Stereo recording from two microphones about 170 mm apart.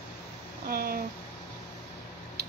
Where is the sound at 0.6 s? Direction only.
60° right (ahead or behind).